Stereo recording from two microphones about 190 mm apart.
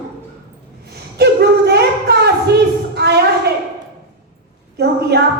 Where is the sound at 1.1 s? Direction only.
60° right (ahead or behind).